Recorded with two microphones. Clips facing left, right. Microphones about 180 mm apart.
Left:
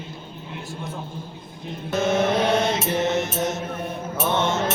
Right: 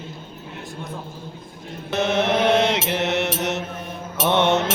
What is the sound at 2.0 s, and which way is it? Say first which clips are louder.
Mantra: right 1 dB; 70° right (ahead or behind).